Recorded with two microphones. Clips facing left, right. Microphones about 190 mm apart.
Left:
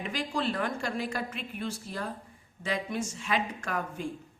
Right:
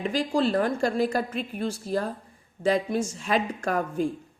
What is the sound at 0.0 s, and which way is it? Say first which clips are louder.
A woman's voice: right 7 dB; 35° right (ahead or behind).